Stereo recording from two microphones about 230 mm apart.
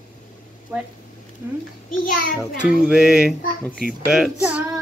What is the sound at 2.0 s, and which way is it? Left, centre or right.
Speech, left.